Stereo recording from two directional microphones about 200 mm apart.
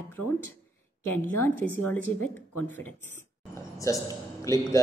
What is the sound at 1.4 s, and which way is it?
A man's voice, 10° left (ahead or behind).